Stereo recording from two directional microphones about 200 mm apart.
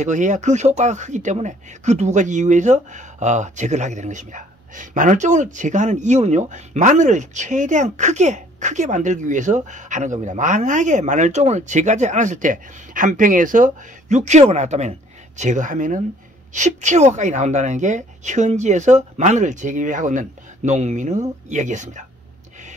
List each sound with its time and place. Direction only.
0.0 s speech: 40° right (ahead or behind)